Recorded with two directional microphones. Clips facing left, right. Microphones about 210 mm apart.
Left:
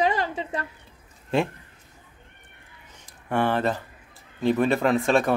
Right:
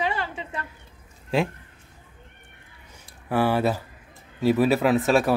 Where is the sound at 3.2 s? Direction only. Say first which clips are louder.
Right 2 dB; 5° right (ahead or behind).